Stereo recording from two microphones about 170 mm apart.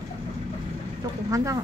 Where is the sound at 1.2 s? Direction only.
20° right (ahead or behind).